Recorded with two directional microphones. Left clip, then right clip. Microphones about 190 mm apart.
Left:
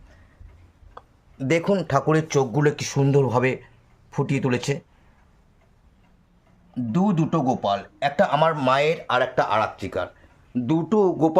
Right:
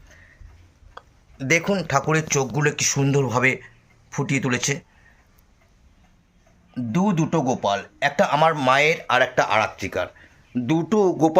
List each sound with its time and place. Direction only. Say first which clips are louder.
0.9 s speech: even; 15° left (ahead or behind)
6.7 s speech: right 1 dB; centre (ahead or behind)